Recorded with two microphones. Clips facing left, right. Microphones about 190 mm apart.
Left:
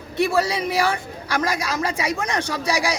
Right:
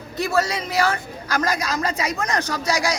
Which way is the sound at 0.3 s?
15° left (ahead or behind).